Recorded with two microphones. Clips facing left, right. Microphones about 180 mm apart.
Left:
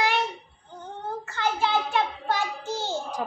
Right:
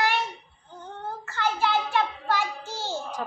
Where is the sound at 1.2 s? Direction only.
20° left (ahead or behind).